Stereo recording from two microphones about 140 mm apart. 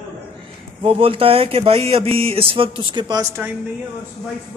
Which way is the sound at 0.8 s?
40° right (ahead or behind).